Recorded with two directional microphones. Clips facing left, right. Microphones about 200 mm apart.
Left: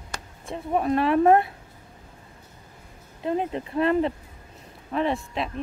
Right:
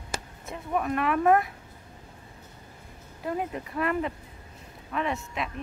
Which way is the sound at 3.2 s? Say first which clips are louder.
Left 5 dB; 25° left (ahead or behind).